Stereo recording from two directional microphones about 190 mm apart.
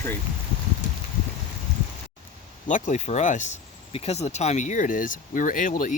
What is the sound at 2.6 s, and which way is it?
Speech, 40° left (ahead or behind).